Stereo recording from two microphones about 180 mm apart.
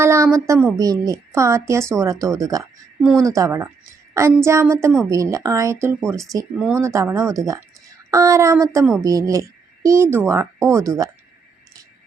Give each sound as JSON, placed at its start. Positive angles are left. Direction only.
{"t": 0.0, "sound": "a woman's voice", "side_deg": -15}
{"t": 3.0, "sound": "speech", "side_deg": 0}
{"t": 3.2, "sound": "a woman's voice", "side_deg": -15}